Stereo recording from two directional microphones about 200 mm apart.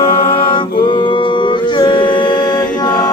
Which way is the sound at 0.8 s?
25° left (ahead or behind).